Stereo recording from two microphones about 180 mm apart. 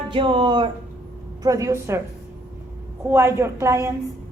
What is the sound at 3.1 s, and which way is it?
Speech, 15° right (ahead or behind).